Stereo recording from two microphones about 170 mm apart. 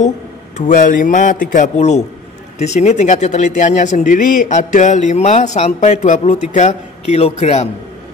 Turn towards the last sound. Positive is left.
turn(degrees=40)  # may be behind; listen again after turning